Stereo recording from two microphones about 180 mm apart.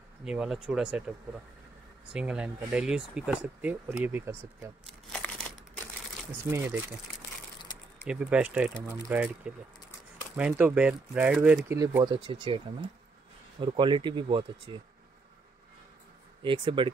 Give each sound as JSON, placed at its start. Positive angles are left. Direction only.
{"t": 0.2, "sound": "speech", "side_deg": -5}
{"t": 2.1, "sound": "speech", "side_deg": -5}
{"t": 6.5, "sound": "speech", "side_deg": -10}
{"t": 8.0, "sound": "speech", "side_deg": -5}
{"t": 11.7, "sound": "speech", "side_deg": -20}
{"t": 16.4, "sound": "speech", "side_deg": -30}